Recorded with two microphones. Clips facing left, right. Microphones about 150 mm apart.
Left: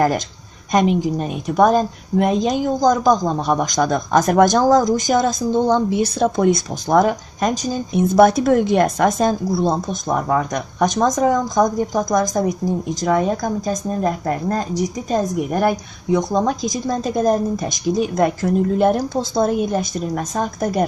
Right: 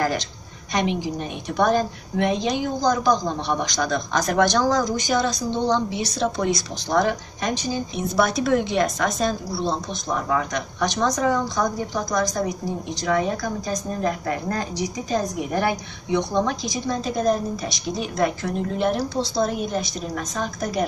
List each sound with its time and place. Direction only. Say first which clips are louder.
0.7 s a woman's voice: left 7 dB; 45° left (ahead or behind)
15.5 s speech: left 4 dB; 45° left (ahead or behind)